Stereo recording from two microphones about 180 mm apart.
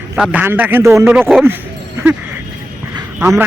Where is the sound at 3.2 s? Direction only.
10° right (ahead or behind).